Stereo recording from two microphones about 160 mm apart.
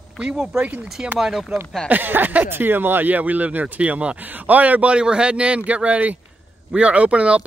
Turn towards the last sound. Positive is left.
turn(degrees=-5)  # may be behind; listen again after turning